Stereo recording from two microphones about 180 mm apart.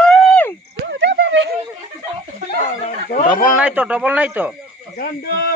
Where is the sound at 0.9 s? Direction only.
90° right.